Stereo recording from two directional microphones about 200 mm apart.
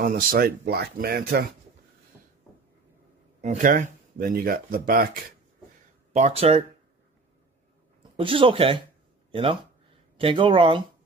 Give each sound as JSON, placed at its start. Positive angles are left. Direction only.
{"t": 0.0, "sound": "speech", "side_deg": -50}
{"t": 3.3, "sound": "speech", "side_deg": -40}
{"t": 6.1, "sound": "speech", "side_deg": -30}
{"t": 8.2, "sound": "speech", "side_deg": -25}